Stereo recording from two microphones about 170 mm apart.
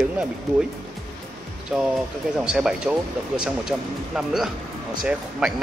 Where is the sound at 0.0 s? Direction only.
5° right (ahead or behind).